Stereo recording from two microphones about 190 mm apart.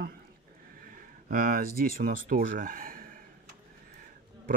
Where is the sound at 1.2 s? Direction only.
50° right (ahead or behind).